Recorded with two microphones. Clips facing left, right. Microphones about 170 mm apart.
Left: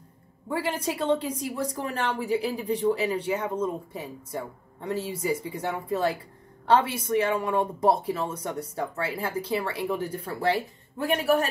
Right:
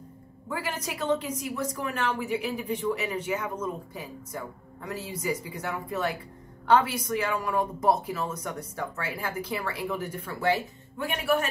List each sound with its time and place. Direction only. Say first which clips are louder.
0.5 s a woman's voice: left 5 dB; 30° left (ahead or behind)